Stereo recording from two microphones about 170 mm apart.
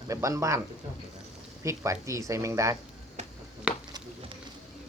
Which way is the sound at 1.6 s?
15° right (ahead or behind).